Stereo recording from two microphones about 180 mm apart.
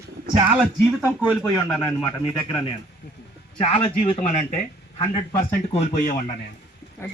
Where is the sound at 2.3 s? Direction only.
25° left (ahead or behind).